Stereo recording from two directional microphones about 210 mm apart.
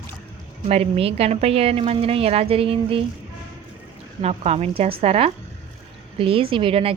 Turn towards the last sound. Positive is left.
turn(degrees=-25)  # may be behind; listen again after turning